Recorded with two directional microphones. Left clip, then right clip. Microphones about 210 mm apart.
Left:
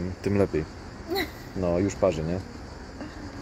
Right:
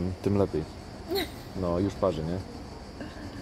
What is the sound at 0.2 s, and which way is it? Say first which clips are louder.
Speech: left 2 dB; 5° right (ahead or behind).